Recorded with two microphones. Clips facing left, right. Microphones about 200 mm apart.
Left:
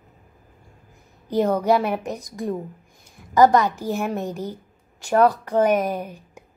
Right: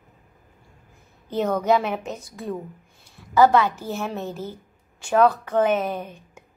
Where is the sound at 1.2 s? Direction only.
10° left (ahead or behind).